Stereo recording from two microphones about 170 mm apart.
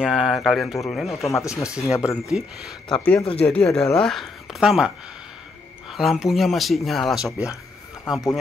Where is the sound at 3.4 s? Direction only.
5° left (ahead or behind).